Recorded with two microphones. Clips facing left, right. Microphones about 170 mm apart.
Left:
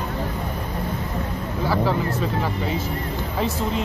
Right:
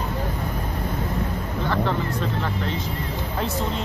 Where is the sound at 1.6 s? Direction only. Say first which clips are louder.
Left 3 dB; 5° left (ahead or behind).